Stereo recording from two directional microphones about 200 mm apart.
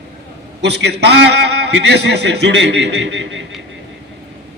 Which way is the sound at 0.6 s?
55° right (ahead or behind).